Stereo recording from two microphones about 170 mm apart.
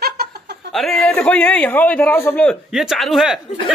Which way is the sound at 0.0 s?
65° right (ahead or behind).